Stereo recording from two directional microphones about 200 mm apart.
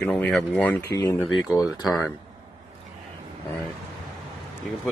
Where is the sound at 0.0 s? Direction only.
5° left (ahead or behind).